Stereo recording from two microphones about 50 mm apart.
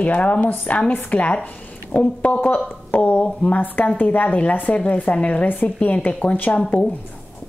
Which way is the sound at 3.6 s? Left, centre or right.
Left.